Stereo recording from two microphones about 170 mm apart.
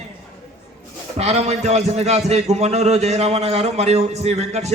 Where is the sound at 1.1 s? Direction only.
40° right (ahead or behind).